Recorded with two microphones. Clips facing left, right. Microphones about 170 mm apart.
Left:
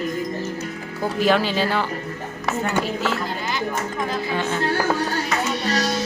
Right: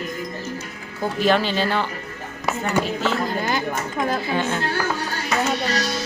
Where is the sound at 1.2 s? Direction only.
5° left (ahead or behind).